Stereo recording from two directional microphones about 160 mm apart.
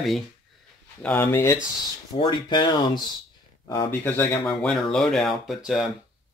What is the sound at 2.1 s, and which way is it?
Speech, 30° left (ahead or behind).